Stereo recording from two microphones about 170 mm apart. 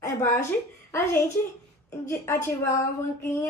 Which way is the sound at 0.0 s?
15° left (ahead or behind).